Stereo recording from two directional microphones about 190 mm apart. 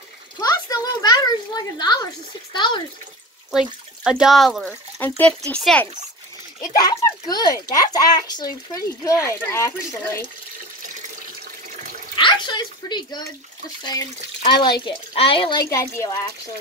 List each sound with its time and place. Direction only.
0.4 s a sound: 20° left (ahead or behind)
2.5 s a child's voice: 25° left (ahead or behind)
3.5 s speech: 5° right (ahead or behind)
6.6 s a child's voice: 20° left (ahead or behind)
12.2 s a child's voice: 25° left (ahead or behind)